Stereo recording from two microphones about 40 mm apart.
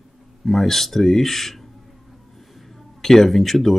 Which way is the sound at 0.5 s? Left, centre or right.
Centre.